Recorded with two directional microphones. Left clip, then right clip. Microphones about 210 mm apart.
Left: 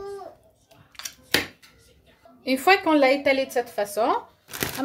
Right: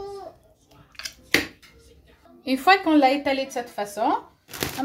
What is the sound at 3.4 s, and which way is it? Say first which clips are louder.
Speech: left 3 dB; 45° left (ahead or behind).